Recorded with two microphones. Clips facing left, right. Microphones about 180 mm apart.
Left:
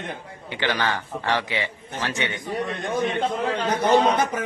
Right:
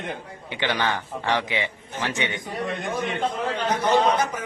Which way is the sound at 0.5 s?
20° right (ahead or behind).